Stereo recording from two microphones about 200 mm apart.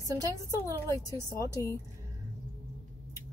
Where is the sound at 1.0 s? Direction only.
15° left (ahead or behind).